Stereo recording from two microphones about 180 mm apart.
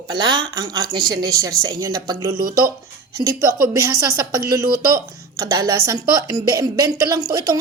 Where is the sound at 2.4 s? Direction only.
55° right (ahead or behind).